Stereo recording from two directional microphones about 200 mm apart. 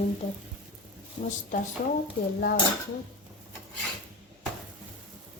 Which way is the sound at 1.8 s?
40° left (ahead or behind).